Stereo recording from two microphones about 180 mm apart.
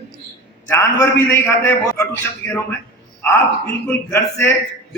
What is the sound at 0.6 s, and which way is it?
A man's voice, 15° left (ahead or behind).